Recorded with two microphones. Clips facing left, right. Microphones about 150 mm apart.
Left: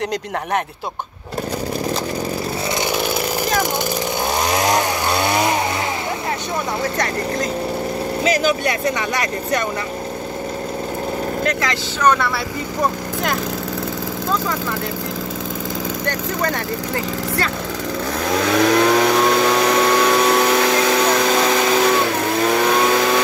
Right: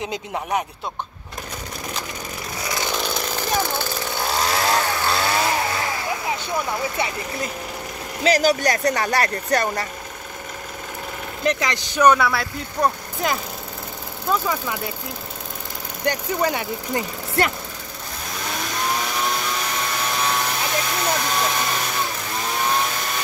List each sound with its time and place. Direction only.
2.8 s chainsaw: 10° left (ahead or behind)
8.2 s speech: 40° right (ahead or behind)
11.4 s speech: 15° right (ahead or behind)
12.3 s speech: centre (ahead or behind)
16.1 s speech: 10° right (ahead or behind)
18.2 s vehicle: 90° left